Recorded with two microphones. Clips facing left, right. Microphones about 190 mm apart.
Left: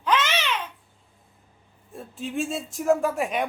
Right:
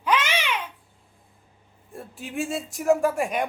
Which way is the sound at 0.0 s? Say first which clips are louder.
Even; 10° right (ahead or behind).